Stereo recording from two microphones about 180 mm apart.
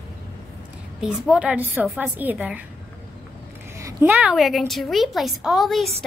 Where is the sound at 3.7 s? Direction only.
15° right (ahead or behind).